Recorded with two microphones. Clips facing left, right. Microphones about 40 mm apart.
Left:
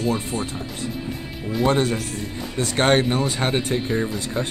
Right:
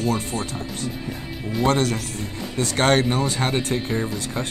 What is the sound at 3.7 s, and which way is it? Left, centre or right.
Speech, centre.